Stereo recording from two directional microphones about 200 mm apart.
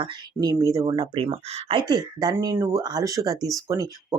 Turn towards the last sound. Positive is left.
turn(degrees=-15)  # may be behind; listen again after turning